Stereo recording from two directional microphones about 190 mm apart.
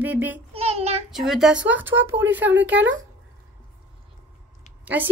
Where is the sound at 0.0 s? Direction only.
10° right (ahead or behind).